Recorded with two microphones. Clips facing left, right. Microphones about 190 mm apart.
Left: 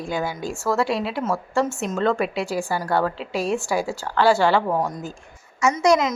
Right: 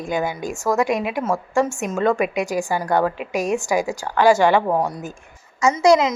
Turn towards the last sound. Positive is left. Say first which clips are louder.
# right 3 dB
turn(degrees=-30)  # may be behind; listen again after turning